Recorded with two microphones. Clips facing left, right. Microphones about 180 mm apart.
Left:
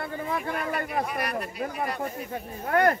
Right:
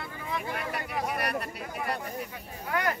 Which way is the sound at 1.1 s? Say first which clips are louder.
Left 1 dB; 60° right (ahead or behind).